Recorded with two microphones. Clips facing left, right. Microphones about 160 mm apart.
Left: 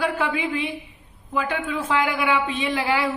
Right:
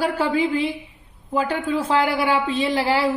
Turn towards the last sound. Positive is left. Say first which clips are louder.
# right 3 dB
turn(degrees=-35)  # may be behind; listen again after turning